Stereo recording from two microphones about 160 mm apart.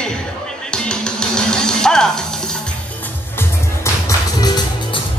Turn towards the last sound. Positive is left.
turn(degrees=25)  # may be behind; listen again after turning